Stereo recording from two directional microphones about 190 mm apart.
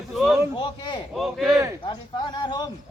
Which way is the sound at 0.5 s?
25° left (ahead or behind).